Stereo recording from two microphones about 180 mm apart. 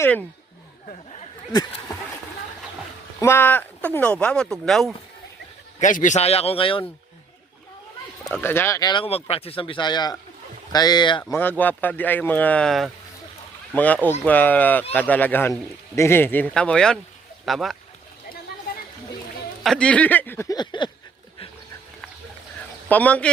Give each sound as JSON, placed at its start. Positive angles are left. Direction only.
{"t": 3.2, "sound": "speech", "side_deg": 15}
{"t": 5.8, "sound": "speech", "side_deg": 45}
{"t": 8.2, "sound": "speech", "side_deg": 10}
{"t": 11.2, "sound": "speech", "side_deg": 10}
{"t": 19.6, "sound": "speech", "side_deg": 5}
{"t": 22.9, "sound": "speech", "side_deg": 10}